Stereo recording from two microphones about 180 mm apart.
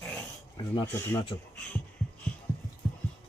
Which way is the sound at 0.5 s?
25° left (ahead or behind).